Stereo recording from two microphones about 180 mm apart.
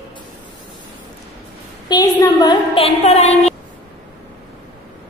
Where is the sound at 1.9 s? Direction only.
25° left (ahead or behind).